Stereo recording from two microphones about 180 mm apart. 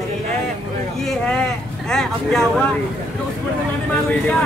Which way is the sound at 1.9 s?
Centre (ahead or behind).